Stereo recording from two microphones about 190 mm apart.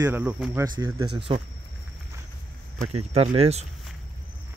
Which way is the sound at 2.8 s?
35° right (ahead or behind).